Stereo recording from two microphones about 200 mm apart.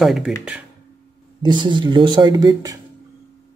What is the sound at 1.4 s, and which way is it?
Speech, 20° right (ahead or behind).